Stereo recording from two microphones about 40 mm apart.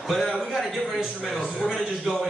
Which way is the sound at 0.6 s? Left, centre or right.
Centre.